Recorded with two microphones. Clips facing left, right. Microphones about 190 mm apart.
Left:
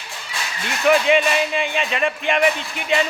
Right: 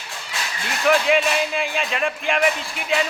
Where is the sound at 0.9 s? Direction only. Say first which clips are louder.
Left 2 dB; centre (ahead or behind).